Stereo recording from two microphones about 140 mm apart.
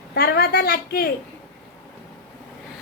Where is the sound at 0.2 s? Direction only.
90° left.